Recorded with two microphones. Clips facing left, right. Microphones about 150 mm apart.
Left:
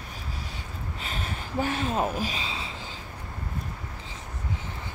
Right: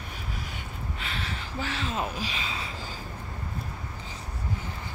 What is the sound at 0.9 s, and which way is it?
Gasp, 45° left (ahead or behind).